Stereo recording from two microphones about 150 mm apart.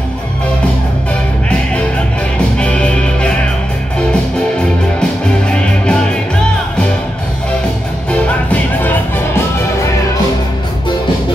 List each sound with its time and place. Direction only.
2.6 s music: 10° left (ahead or behind)
5.5 s music: 5° left (ahead or behind)
8.1 s music: 10° left (ahead or behind)